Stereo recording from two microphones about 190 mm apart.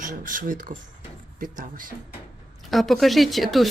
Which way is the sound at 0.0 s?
45° right (ahead or behind).